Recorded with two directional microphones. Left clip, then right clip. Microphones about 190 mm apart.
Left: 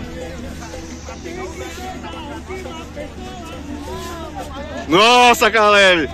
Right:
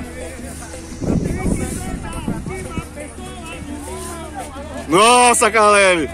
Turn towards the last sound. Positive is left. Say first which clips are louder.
# left 1 dB
turn(degrees=-10)  # may be behind; listen again after turning